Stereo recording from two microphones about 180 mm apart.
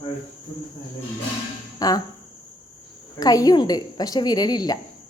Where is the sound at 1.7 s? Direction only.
20° left (ahead or behind).